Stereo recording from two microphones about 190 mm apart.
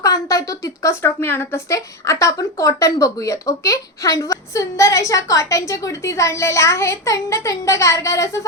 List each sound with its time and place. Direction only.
0.0 s speech: 15° left (ahead or behind)